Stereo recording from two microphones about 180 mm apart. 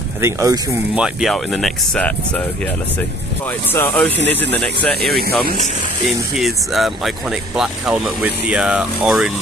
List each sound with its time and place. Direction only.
0.2 s speech: 15° right (ahead or behind)
0.9 s speech: 5° right (ahead or behind)
3.7 s speech: 10° left (ahead or behind)
6.3 s speech: centre (ahead or behind)